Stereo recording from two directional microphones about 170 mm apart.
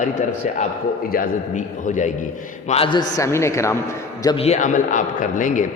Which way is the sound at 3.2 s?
15° left (ahead or behind).